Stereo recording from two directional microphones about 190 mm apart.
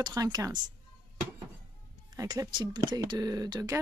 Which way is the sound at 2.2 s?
20° right (ahead or behind).